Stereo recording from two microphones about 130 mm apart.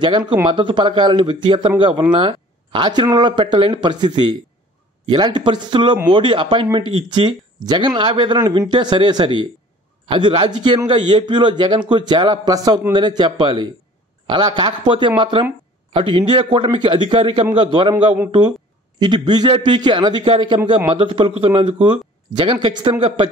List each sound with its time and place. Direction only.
0.0 s speech: 35° right (ahead or behind)